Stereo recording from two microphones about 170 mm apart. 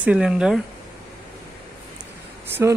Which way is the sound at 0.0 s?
5° right (ahead or behind).